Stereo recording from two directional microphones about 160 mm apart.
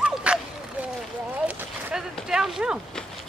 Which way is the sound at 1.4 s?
5° right (ahead or behind).